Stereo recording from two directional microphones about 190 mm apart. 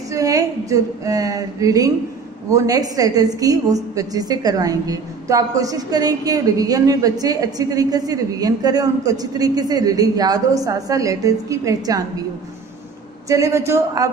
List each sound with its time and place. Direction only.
0.1 s a woman's voice: 20° right (ahead or behind)
13.3 s a man's voice: 15° right (ahead or behind)